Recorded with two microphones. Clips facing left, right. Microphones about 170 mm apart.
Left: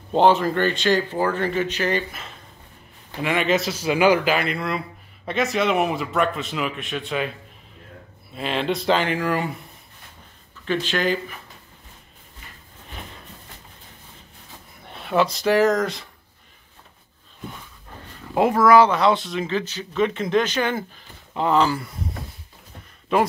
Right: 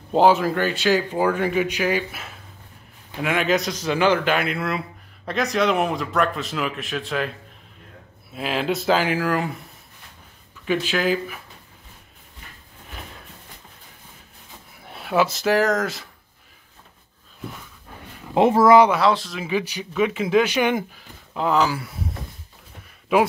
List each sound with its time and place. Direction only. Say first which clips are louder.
0.1 s a man's voice: even; 5° right (ahead or behind)
14.8 s speech: even; 5° right (ahead or behind)
18.3 s speech: right 1 dB; 25° right (ahead or behind)
18.9 s speech: even; centre (ahead or behind)
21.3 s a man's voice: left 1 dB; centre (ahead or behind)
23.1 s a man's voice: right 2 dB; 5° right (ahead or behind)